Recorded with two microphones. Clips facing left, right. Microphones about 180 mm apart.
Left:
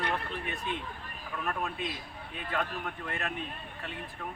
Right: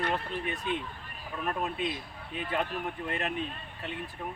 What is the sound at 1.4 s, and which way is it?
Speech, 20° right (ahead or behind).